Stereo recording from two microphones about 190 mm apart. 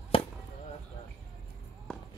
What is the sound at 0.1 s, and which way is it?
Chop, 30° left (ahead or behind).